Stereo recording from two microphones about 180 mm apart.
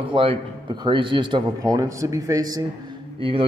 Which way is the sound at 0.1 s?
30° right (ahead or behind).